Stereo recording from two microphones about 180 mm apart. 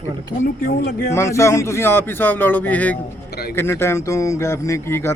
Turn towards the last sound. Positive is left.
turn(degrees=15)  # may be behind; listen again after turning